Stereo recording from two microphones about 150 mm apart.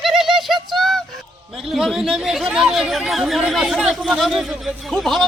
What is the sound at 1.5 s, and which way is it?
Speech, centre (ahead or behind).